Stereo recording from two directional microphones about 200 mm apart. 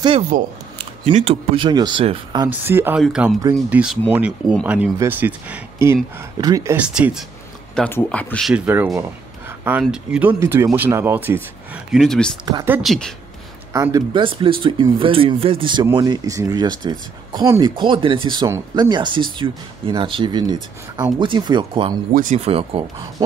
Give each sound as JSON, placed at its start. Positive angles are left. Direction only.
{"t": 0.3, "sound": "speech", "side_deg": -45}
{"t": 1.0, "sound": "speech", "side_deg": -30}
{"t": 2.4, "sound": "speech", "side_deg": -10}
{"t": 6.9, "sound": "speech", "side_deg": -5}
{"t": 12.4, "sound": "speech", "side_deg": -15}
{"t": 13.7, "sound": "speech", "side_deg": -20}
{"t": 22.1, "sound": "speech", "side_deg": -40}